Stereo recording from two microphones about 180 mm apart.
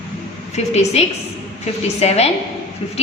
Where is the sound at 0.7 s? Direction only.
35° left (ahead or behind).